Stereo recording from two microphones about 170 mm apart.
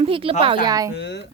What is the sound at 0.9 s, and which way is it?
Speech, 90° left.